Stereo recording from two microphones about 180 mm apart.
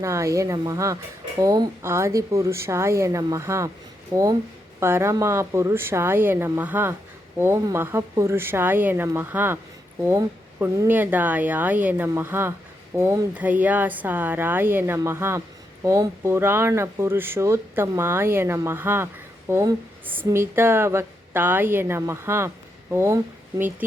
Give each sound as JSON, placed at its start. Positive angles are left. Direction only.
{"t": 0.0, "sound": "speech", "side_deg": -15}